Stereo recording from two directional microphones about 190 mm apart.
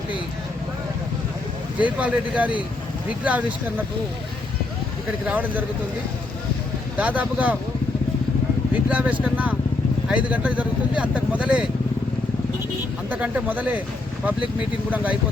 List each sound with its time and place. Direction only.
1.8 s speech: 5° right (ahead or behind)
5.2 s speech: 10° right (ahead or behind)
6.9 s speech: 5° right (ahead or behind)
8.9 s speech: 5° right (ahead or behind)
13.1 s speech: 5° right (ahead or behind)